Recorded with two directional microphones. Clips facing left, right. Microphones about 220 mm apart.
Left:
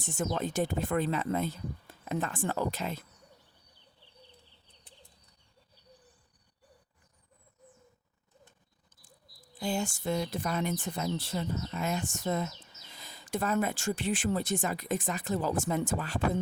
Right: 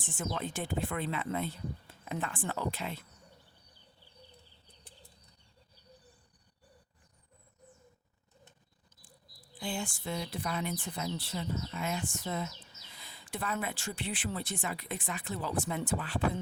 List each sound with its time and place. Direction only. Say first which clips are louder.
0.0 s speech: left 5 dB; 40° left (ahead or behind)
9.0 s speech: left 1 dB; 45° left (ahead or behind)